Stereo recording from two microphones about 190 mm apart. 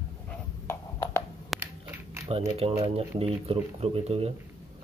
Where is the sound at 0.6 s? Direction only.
15° left (ahead or behind).